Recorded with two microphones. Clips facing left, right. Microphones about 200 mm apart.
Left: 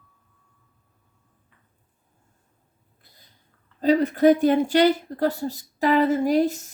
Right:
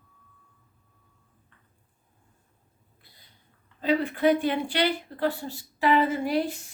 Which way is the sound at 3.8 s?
40° left (ahead or behind).